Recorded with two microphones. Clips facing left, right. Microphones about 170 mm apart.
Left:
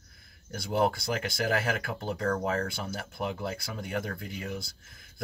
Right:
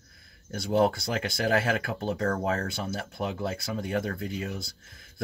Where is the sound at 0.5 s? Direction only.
25° right (ahead or behind).